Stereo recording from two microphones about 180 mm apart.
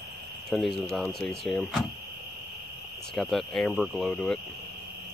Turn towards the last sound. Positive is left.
turn(degrees=5)  # may be behind; listen again after turning